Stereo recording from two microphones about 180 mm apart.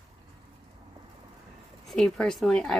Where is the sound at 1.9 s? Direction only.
5° left (ahead or behind).